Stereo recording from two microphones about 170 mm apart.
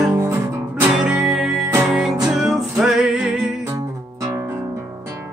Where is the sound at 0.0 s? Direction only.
15° right (ahead or behind).